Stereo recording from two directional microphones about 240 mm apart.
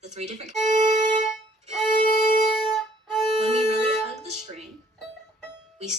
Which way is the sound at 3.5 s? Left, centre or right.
Right.